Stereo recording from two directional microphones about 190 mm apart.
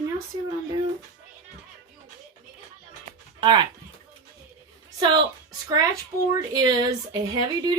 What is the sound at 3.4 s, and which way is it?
Speech, 25° right (ahead or behind).